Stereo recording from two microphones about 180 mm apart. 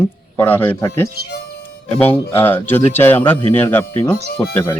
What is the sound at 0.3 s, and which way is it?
Speech, 10° left (ahead or behind).